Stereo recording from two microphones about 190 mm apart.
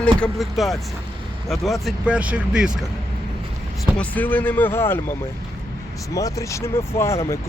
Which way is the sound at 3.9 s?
10° left (ahead or behind).